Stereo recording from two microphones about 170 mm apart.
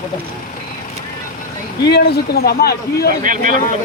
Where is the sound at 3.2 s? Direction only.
55° right (ahead or behind).